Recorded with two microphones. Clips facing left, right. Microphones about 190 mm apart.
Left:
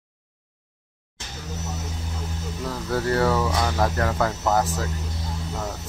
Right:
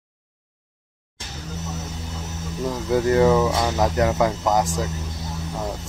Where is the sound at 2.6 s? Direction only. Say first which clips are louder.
Right 5 dB; 15° right (ahead or behind).